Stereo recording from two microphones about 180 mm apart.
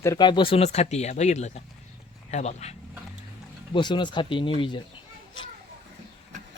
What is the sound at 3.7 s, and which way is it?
Speech, 25° left (ahead or behind).